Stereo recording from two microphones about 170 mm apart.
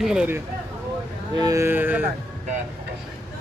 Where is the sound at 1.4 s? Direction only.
20° right (ahead or behind).